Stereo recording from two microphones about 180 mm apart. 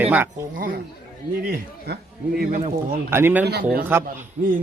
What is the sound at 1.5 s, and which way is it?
Speech, 60° right (ahead or behind).